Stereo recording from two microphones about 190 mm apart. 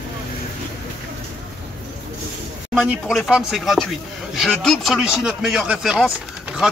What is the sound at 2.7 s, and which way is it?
A man's voice, centre (ahead or behind).